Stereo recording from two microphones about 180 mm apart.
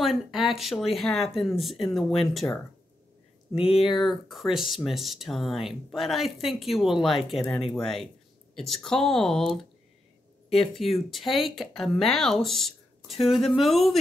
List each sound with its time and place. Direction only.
0.0 s speech: centre (ahead or behind)
3.5 s speech: 30° left (ahead or behind)
3.8 s speech: centre (ahead or behind)
10.5 s speech: centre (ahead or behind)